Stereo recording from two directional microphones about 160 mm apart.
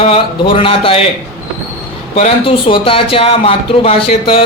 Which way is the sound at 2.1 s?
40° left (ahead or behind).